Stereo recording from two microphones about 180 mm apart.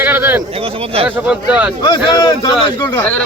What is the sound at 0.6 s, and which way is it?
Speech, 30° right (ahead or behind).